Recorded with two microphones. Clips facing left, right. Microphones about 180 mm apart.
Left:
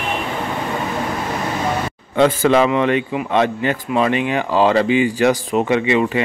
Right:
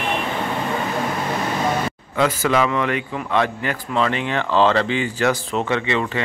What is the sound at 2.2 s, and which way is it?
Speech, 25° left (ahead or behind).